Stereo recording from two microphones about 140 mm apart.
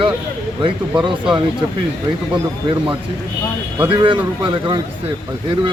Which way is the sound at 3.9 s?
35° right (ahead or behind).